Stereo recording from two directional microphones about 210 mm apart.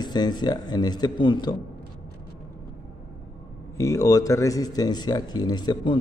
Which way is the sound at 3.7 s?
15° left (ahead or behind).